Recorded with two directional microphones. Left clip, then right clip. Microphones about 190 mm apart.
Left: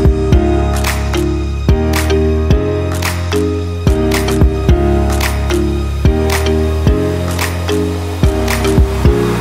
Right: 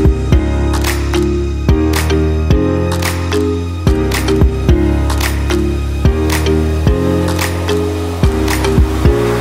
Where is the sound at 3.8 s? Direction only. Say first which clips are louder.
Left 1 dB; centre (ahead or behind).